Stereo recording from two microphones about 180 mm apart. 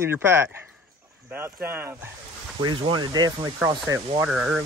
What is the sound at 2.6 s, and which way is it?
Speech, 25° right (ahead or behind).